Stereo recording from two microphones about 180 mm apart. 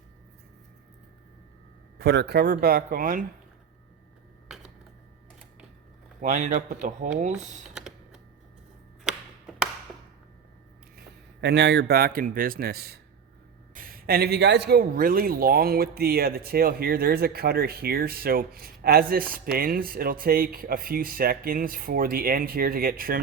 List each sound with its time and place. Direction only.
2.0 s speech: 65° right (ahead or behind); by 3.2 s 50° right (ahead or behind)
4.4 s a sound: 5° right (ahead or behind)
6.2 s speech: 45° right (ahead or behind)
7.8 s typing: centre (ahead or behind)
11.3 s speech: 70° right (ahead or behind); by 23.2 s 55° right (ahead or behind)